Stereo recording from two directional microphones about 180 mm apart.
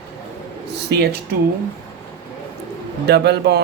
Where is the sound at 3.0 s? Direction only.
70° right (ahead or behind).